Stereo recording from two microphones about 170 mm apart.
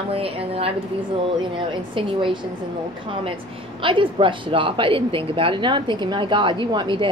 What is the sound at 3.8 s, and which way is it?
A woman's voice, 30° right (ahead or behind).